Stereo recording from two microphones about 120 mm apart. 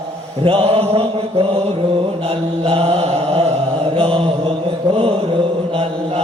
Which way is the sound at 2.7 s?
55° right (ahead or behind).